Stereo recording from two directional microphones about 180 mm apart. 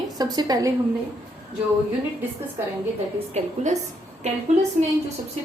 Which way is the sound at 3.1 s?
35° right (ahead or behind).